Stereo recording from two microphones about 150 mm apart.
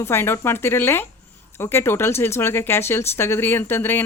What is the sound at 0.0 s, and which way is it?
Speech, 15° left (ahead or behind).